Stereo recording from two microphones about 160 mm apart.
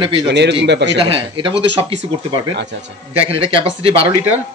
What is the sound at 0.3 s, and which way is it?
Speech, 90° right.